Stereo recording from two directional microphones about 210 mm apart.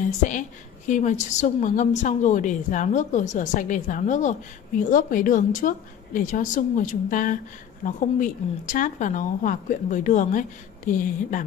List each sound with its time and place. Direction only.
0.2 s a woman's voice: 35° left (ahead or behind)